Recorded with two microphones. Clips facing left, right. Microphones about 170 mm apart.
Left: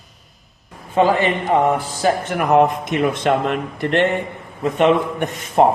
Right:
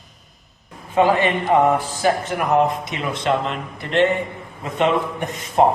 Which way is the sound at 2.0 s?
60° left (ahead or behind).